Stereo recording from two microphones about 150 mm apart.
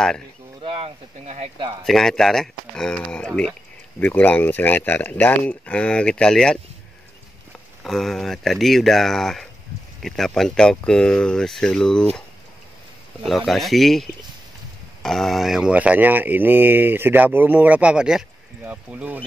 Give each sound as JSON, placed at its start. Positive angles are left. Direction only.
{"t": 0.7, "sound": "speech", "side_deg": -35}
{"t": 1.9, "sound": "speech", "side_deg": 0}
{"t": 7.8, "sound": "speech", "side_deg": 0}
{"t": 13.5, "sound": "speech", "side_deg": 0}